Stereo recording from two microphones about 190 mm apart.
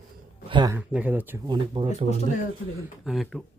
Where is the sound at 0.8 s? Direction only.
10° right (ahead or behind).